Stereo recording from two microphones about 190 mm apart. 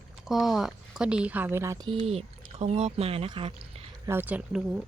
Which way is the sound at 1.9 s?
30° right (ahead or behind).